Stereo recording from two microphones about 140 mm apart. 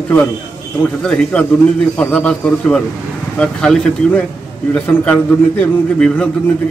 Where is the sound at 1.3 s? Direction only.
10° left (ahead or behind).